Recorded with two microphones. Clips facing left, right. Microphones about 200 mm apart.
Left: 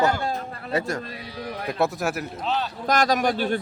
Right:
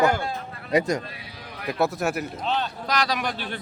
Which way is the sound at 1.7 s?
Centre (ahead or behind).